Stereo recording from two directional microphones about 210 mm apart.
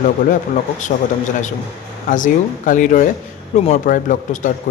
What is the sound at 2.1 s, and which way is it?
Speech, 40° left (ahead or behind).